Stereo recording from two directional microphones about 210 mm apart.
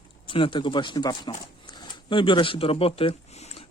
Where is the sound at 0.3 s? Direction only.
25° left (ahead or behind).